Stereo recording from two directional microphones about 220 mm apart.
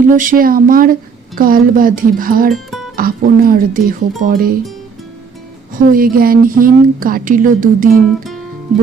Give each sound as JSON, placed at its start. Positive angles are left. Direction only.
{"t": 0.0, "sound": "a woman's voice", "side_deg": -35}
{"t": 2.5, "sound": "music", "side_deg": 0}
{"t": 2.9, "sound": "a woman's voice", "side_deg": -40}
{"t": 5.9, "sound": "a woman's voice", "side_deg": -40}